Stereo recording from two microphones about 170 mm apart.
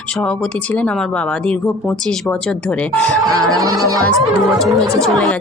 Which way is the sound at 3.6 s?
20° right (ahead or behind).